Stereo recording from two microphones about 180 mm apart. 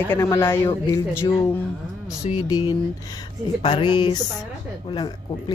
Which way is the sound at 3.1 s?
25° left (ahead or behind).